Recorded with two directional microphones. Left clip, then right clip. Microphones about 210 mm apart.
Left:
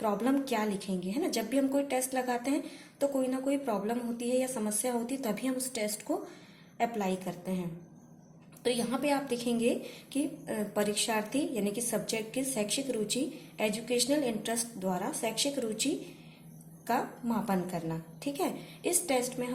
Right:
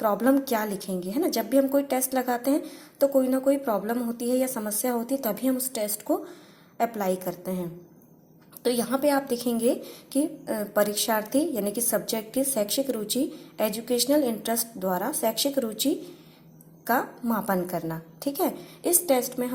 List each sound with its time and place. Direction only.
0.0 s a woman's voice: 30° right (ahead or behind)
8.6 s a woman's voice: 30° right (ahead or behind)